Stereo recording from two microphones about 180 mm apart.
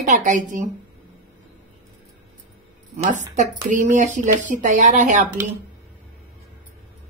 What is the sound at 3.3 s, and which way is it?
Speech, 45° right (ahead or behind).